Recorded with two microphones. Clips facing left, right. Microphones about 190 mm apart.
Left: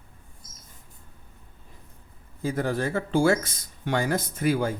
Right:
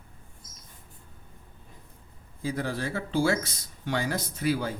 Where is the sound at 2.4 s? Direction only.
50° left (ahead or behind).